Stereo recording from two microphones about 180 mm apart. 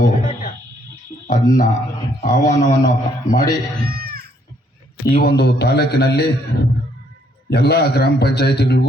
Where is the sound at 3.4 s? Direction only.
65° right (ahead or behind).